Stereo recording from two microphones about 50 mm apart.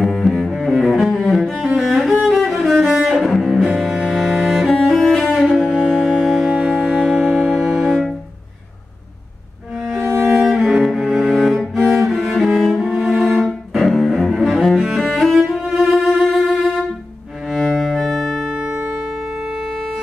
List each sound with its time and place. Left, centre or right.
0.0 s cello: centre
2.2 s music: centre
2.8 s cello: centre
5.3 s music: centre
5.7 s music: centre
9.8 s music: centre
10.3 s cello: centre
16.3 s music: centre
17.7 s cello: centre
18.5 s music: centre